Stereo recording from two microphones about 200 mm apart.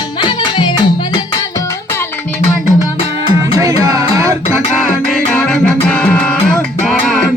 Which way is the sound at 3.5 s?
15° right (ahead or behind).